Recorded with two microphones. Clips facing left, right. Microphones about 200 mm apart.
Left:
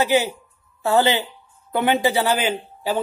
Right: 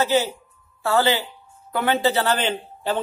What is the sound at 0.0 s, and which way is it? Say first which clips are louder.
A man's voice: left 1 dB; 15° left (ahead or behind).